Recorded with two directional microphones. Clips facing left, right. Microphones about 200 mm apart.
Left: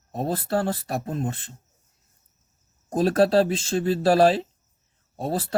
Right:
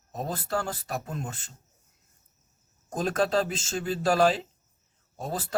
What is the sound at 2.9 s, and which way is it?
Speech, 35° left (ahead or behind).